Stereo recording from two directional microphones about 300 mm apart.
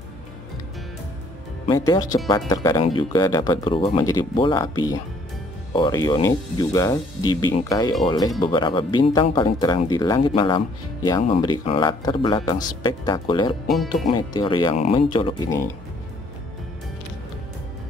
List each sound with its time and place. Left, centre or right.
1.7 s speech: centre
13.7 s speech: centre
14.1 s speech: centre